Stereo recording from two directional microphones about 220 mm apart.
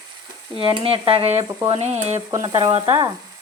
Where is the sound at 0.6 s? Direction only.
25° right (ahead or behind).